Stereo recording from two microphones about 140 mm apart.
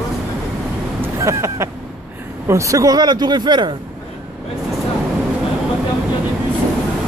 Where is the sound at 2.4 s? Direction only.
20° right (ahead or behind).